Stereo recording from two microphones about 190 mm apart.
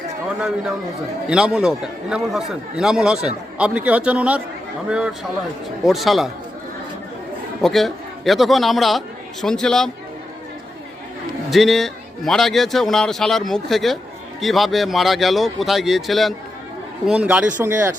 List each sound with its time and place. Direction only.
1.3 s a man's voice: 5° right (ahead or behind)
7.6 s a man's voice: centre (ahead or behind)
11.5 s a man's voice: centre (ahead or behind)